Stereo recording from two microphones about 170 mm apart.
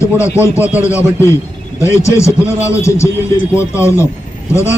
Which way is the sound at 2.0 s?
15° left (ahead or behind).